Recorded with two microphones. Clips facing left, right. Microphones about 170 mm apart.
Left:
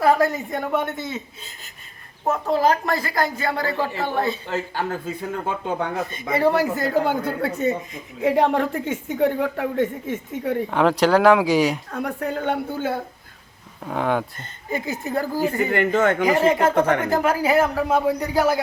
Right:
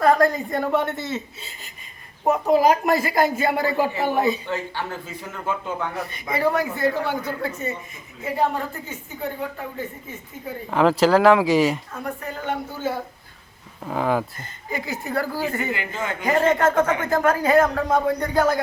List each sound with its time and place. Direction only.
0.0 s a woman's voice: 5° left (ahead or behind)
2.2 s speech: 15° right (ahead or behind)
4.4 s speech: 40° left (ahead or behind)
6.3 s speech: 30° left (ahead or behind)
7.1 s speech: 55° left (ahead or behind)
8.2 s speech: 90° left
10.7 s a woman's voice: centre (ahead or behind)
11.9 s a woman's voice: 70° left (ahead or behind)
13.8 s a woman's voice: centre (ahead or behind)
14.7 s a woman's voice: 20° left (ahead or behind)
15.7 s a woman's voice: 70° left (ahead or behind)
16.2 s speech: 10° left (ahead or behind)